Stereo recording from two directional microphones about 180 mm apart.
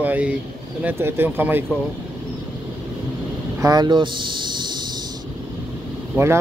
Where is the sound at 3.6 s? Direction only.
20° right (ahead or behind).